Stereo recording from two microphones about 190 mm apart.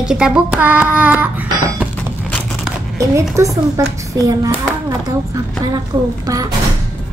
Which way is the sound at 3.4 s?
15° right (ahead or behind).